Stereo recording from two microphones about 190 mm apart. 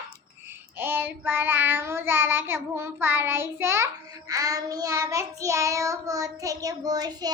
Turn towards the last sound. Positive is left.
turn(degrees=-20)  # may be behind; listen again after turning